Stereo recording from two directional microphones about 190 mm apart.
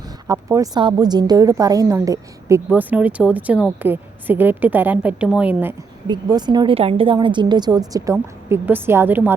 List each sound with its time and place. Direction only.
0.3 s a woman's voice: 15° right (ahead or behind)
6.1 s a woman's voice: 20° right (ahead or behind)